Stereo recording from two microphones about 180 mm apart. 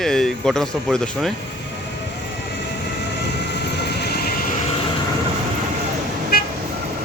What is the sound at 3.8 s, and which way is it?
Train, 65° left (ahead or behind).